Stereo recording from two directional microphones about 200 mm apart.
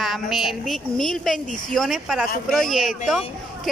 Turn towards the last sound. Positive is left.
turn(degrees=0)  # may be behind; listen again after turning